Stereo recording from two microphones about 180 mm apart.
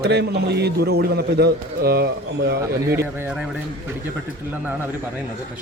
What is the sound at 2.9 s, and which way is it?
Speech, 10° right (ahead or behind).